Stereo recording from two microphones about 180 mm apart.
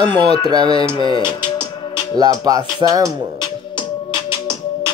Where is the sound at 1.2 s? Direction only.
25° left (ahead or behind).